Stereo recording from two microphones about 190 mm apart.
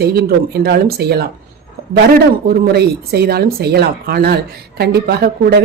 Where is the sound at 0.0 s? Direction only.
55° right (ahead or behind).